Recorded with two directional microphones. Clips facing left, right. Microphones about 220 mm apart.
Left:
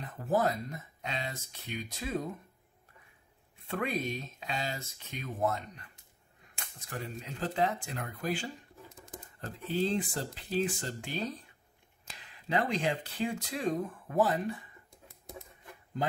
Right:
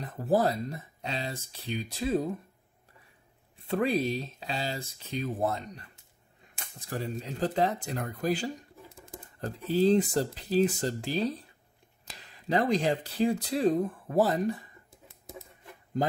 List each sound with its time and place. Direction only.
0.0 s speech: 35° right (ahead or behind)
3.6 s speech: 35° right (ahead or behind)
8.8 s a sound: 10° right (ahead or behind)
9.7 s speech: 40° right (ahead or behind)
14.9 s typewriter: centre (ahead or behind)